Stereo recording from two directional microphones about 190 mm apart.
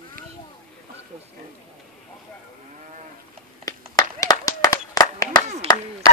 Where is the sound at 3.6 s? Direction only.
20° left (ahead or behind).